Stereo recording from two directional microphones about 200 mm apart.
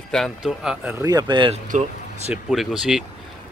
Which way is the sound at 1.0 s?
20° right (ahead or behind).